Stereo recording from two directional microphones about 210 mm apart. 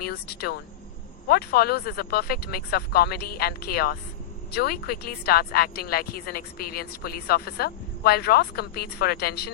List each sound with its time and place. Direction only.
0.0 s speech: 45° left (ahead or behind)